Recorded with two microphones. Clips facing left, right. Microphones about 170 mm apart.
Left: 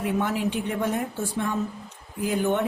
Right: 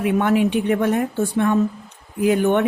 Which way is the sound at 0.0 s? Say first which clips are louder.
Right 8 dB; 65° right (ahead or behind).